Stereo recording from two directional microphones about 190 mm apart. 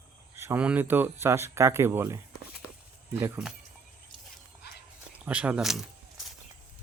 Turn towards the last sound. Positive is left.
turn(degrees=-5)  # may be behind; listen again after turning